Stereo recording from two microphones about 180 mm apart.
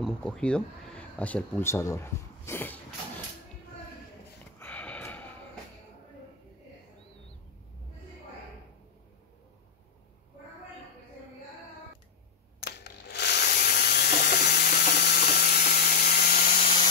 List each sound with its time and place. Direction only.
0.0 s speech: 5° left (ahead or behind)
4.6 s snort: 10° left (ahead or behind)
12.6 s a sound: 65° left (ahead or behind); by 16.5 s 45° left (ahead or behind)